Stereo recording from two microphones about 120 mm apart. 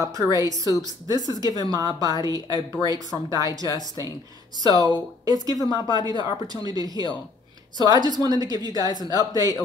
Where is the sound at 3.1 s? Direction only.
30° left (ahead or behind).